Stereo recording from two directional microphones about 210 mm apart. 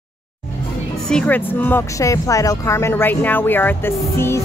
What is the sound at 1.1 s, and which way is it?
Speech, 5° left (ahead or behind).